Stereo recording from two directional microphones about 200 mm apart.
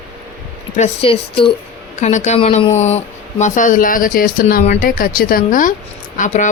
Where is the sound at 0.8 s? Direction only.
30° left (ahead or behind).